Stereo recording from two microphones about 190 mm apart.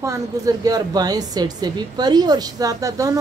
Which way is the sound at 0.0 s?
20° right (ahead or behind).